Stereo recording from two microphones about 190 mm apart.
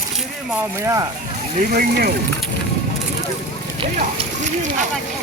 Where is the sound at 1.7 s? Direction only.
55° right (ahead or behind).